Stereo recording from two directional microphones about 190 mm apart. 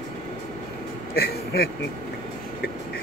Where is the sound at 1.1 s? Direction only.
55° left (ahead or behind).